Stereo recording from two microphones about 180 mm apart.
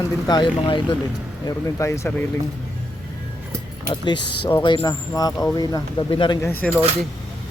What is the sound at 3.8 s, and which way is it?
Speech, 25° left (ahead or behind).